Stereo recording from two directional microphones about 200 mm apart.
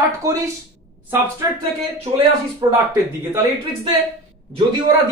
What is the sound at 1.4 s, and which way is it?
Speech, 15° right (ahead or behind).